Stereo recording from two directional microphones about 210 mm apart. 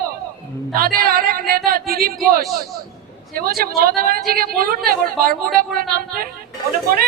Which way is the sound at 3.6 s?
45° right (ahead or behind).